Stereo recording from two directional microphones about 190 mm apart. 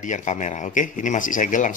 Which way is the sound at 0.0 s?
40° left (ahead or behind).